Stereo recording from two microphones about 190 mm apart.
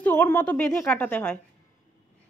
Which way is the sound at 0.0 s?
10° left (ahead or behind).